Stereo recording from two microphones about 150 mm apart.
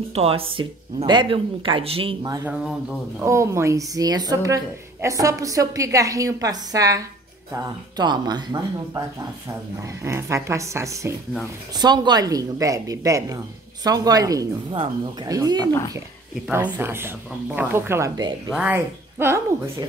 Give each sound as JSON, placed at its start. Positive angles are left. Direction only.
{"t": 0.1, "sound": "speech", "side_deg": -40}
{"t": 2.4, "sound": "speech", "side_deg": -5}
{"t": 3.3, "sound": "a woman's voice", "side_deg": -20}
{"t": 8.0, "sound": "a woman's voice", "side_deg": -30}
{"t": 10.0, "sound": "a woman's voice", "side_deg": -20}
{"t": 16.4, "sound": "a woman's voice", "side_deg": -10}